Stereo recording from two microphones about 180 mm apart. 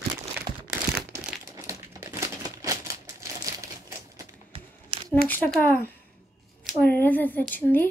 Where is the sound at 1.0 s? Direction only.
5° right (ahead or behind).